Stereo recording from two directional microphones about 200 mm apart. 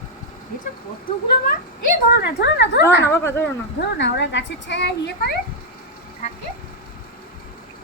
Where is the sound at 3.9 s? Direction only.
65° left (ahead or behind).